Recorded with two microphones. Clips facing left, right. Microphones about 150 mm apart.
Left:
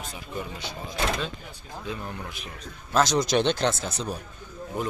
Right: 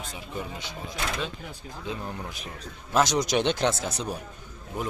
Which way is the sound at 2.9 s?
15° right (ahead or behind).